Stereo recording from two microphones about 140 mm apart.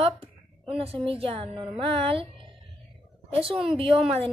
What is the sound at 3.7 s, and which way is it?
Speech, 40° right (ahead or behind).